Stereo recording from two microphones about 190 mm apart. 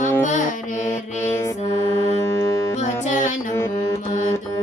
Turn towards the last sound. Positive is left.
turn(degrees=40)  # may be behind; listen again after turning